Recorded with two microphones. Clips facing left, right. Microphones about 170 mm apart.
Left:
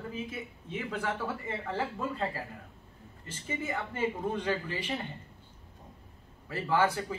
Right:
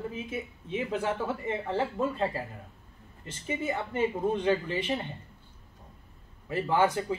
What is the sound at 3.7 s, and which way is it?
Speech, 20° right (ahead or behind).